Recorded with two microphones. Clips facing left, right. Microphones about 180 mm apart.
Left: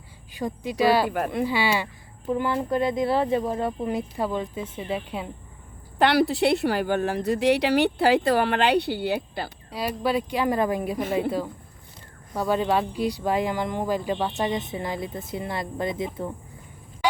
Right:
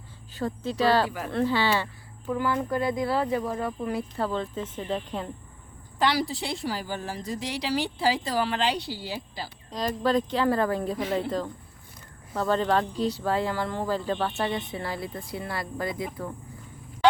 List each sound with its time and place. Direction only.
0.3 s speech: 15° left (ahead or behind)
6.0 s speech: 60° left (ahead or behind)
9.7 s speech: 10° left (ahead or behind)